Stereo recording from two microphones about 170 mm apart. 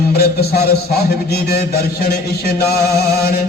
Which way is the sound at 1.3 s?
65° left (ahead or behind).